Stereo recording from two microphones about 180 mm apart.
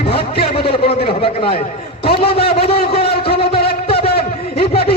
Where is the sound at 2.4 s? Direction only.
60° left (ahead or behind).